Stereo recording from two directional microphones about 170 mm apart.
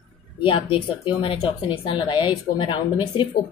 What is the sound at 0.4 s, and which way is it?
Speech, 30° left (ahead or behind).